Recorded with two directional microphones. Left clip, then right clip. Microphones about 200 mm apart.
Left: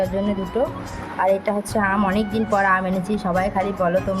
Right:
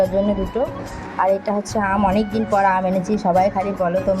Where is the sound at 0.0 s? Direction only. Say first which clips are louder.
Right 5 dB; centre (ahead or behind).